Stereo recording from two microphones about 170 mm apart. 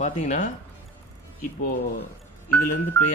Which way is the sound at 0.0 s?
45° left (ahead or behind).